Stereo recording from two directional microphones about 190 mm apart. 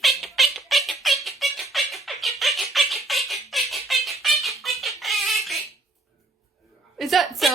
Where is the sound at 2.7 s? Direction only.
Centre (ahead or behind).